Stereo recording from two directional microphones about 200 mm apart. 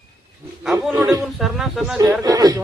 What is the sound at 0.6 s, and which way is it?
Speech, centre (ahead or behind).